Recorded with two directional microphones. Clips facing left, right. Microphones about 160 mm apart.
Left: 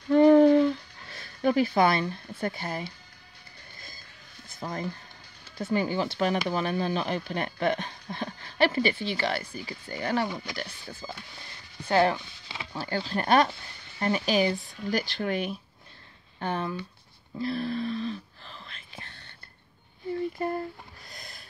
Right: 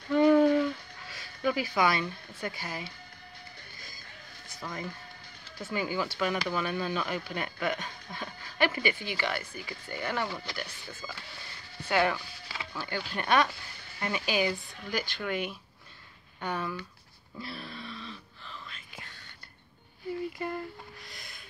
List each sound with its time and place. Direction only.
0.1 s a sound: 35° left (ahead or behind)
1.4 s speech: 40° left (ahead or behind)
4.6 s speech: 35° left (ahead or behind)
10.2 s speech: 15° left (ahead or behind)
10.6 s speech: 35° left (ahead or behind)
16.3 s speech: 30° left (ahead or behind)
17.4 s a sound: 40° left (ahead or behind)
20.3 s a sound: 35° left (ahead or behind)
21.1 s snort: 35° left (ahead or behind)